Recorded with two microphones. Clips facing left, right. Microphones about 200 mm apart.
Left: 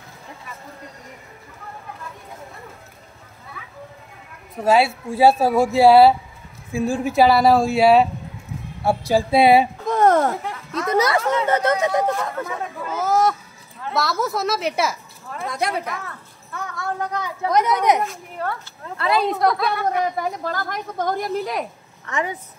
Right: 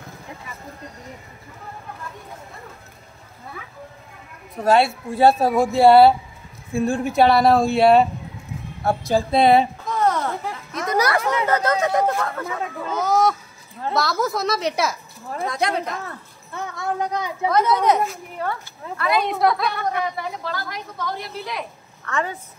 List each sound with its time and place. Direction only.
4.6 s speech: 5° left (ahead or behind)
9.8 s a sound: 50° left (ahead or behind)
10.9 s speech: 25° left (ahead or behind)
12.8 s a sound: 5° left (ahead or behind)
13.9 s speech: centre (ahead or behind)
16.1 s a sound: 25° right (ahead or behind)
17.5 s speech: 15° left (ahead or behind)
18.0 s speech: centre (ahead or behind)
18.9 s speech: 30° left (ahead or behind)
19.3 s speech: centre (ahead or behind)
20.2 s a woman's voice: 45° left (ahead or behind)
22.0 s speech: 15° left (ahead or behind)